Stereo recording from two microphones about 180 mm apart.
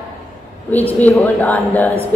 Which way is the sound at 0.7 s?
10° left (ahead or behind).